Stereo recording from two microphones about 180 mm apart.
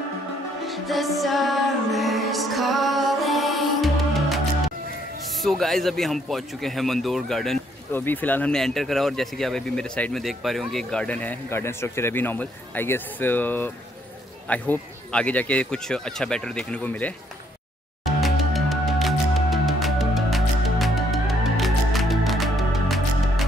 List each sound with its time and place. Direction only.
0.7 s music: centre (ahead or behind)
5.4 s speech: centre (ahead or behind)
7.9 s speech: 10° left (ahead or behind)
18.0 s music: centre (ahead or behind)